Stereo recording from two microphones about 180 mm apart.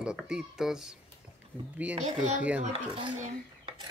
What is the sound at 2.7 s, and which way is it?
Speech, 30° right (ahead or behind).